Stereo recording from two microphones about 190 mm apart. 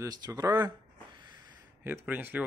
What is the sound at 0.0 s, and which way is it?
Speech, 20° right (ahead or behind).